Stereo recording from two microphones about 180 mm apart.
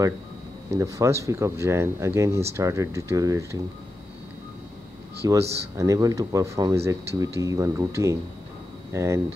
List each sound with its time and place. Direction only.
0.7 s speech: 15° right (ahead or behind)
5.2 s speech: 20° right (ahead or behind)